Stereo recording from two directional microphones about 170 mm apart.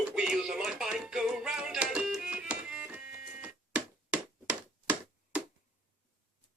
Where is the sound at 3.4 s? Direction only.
5° right (ahead or behind).